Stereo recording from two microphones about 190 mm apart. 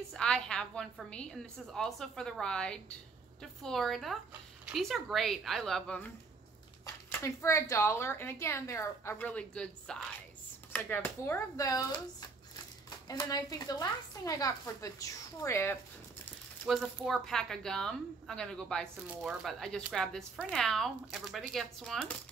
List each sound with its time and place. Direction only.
0.1 s speech: 5° left (ahead or behind)
7.1 s speech: 15° left (ahead or behind)
13.1 s speech: 20° left (ahead or behind)
16.6 s speech: centre (ahead or behind)